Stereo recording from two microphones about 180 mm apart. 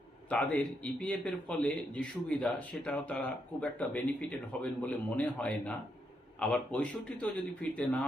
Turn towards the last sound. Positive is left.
turn(degrees=5)  # may be behind; listen again after turning